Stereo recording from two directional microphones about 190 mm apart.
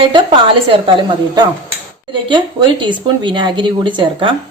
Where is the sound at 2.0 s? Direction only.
25° right (ahead or behind).